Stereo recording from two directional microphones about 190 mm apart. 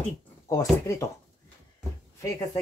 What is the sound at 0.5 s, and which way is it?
Speech, 15° left (ahead or behind).